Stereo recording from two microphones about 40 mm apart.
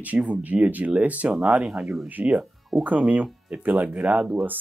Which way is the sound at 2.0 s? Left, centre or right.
Right.